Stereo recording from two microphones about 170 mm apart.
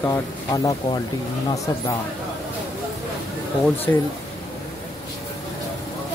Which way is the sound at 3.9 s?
15° left (ahead or behind).